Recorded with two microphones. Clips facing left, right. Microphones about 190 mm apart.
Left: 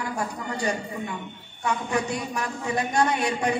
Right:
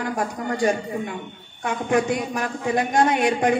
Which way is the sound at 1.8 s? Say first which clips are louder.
Right 6 dB; 50° right (ahead or behind).